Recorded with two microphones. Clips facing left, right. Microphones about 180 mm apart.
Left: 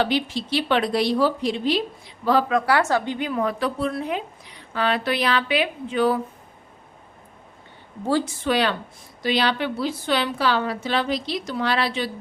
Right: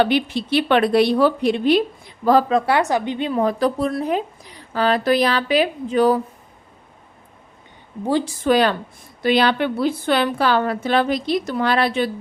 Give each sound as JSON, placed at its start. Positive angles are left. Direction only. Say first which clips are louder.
{"t": 0.0, "sound": "speech", "louder": "right 4 dB", "side_deg": -60}
{"t": 2.5, "sound": "speech", "louder": "right 3 dB", "side_deg": -30}
{"t": 2.7, "sound": "speech", "louder": "right 2 dB", "side_deg": -15}
{"t": 8.4, "sound": "a woman's voice", "louder": "right 7 dB", "side_deg": -45}